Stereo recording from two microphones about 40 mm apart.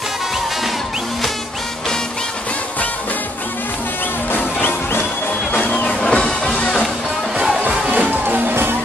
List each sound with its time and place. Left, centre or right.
4.3 s music: left
5.7 s music: left
7.3 s music: centre
7.9 s music: right